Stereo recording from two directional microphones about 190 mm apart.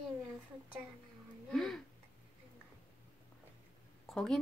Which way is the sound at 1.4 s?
5° left (ahead or behind).